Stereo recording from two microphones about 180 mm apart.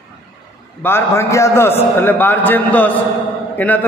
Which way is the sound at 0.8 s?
15° left (ahead or behind).